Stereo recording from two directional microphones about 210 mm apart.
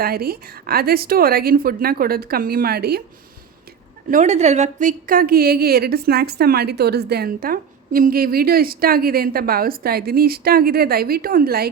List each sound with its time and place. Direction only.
0.0 s a woman's voice: 45° right (ahead or behind)
4.1 s a woman's voice: 35° right (ahead or behind)